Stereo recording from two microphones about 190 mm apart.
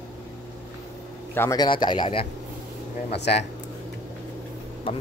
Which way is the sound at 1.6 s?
25° left (ahead or behind).